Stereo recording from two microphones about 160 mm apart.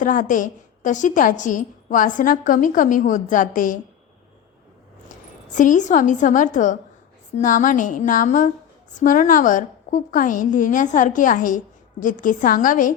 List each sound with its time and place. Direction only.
0.0 s a woman's voice: 55° left (ahead or behind)
5.5 s a woman's voice: 50° left (ahead or behind)